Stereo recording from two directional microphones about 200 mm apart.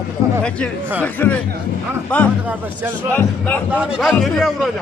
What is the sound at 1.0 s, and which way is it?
Speech, 10° left (ahead or behind).